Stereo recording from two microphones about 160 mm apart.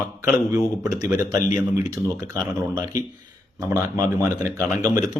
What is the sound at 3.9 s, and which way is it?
Speech, 20° right (ahead or behind).